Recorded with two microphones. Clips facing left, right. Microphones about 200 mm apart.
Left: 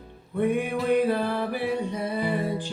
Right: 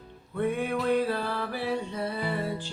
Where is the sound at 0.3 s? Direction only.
15° left (ahead or behind).